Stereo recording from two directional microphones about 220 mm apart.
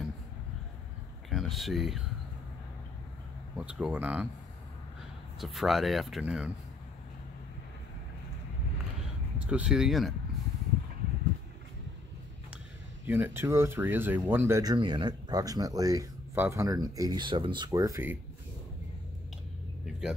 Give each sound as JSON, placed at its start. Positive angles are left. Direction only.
{"t": 1.3, "sound": "speech", "side_deg": 0}
{"t": 3.5, "sound": "speech", "side_deg": -5}
{"t": 5.4, "sound": "speech", "side_deg": 0}
{"t": 9.4, "sound": "speech", "side_deg": -5}
{"t": 13.0, "sound": "speech", "side_deg": -10}